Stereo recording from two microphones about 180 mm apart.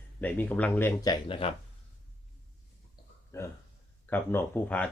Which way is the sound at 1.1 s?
30° left (ahead or behind).